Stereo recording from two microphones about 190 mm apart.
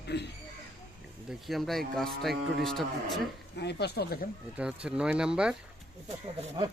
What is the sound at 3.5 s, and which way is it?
Speech, 60° left (ahead or behind).